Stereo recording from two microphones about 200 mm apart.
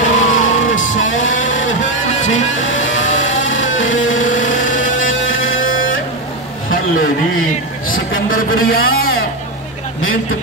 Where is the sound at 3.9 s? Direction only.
70° left (ahead or behind).